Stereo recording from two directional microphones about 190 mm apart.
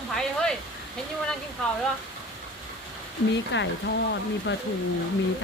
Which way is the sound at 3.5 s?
70° left (ahead or behind).